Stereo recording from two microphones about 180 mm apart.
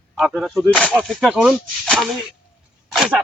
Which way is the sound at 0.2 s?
Centre (ahead or behind).